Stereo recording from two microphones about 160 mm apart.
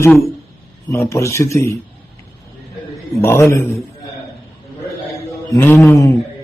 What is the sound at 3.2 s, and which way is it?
Speech, 15° left (ahead or behind).